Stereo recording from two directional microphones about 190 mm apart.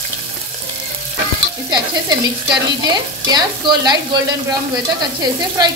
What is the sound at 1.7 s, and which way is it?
Speech, 20° right (ahead or behind).